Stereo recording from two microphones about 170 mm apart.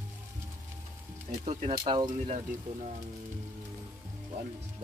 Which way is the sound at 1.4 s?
45° right (ahead or behind).